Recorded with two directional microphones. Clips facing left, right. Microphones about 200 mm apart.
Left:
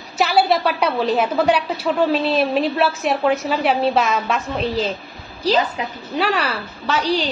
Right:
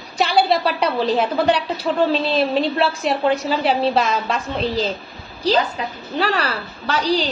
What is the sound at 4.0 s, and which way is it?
Speech, 30° right (ahead or behind).